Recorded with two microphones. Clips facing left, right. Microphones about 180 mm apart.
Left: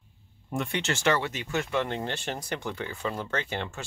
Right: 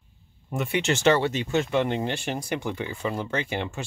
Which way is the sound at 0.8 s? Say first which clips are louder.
Right 6 dB; 20° right (ahead or behind).